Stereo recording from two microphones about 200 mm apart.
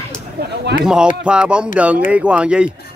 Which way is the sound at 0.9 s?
5° right (ahead or behind).